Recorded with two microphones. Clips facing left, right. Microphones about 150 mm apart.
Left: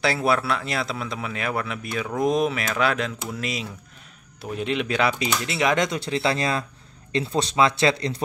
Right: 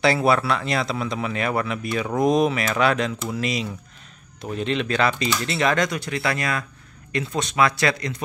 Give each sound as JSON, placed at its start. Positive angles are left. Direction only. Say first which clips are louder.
{"t": 0.0, "sound": "speech", "louder": "right 3 dB", "side_deg": 0}